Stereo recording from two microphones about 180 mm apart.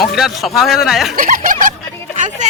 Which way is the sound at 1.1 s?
50° right (ahead or behind).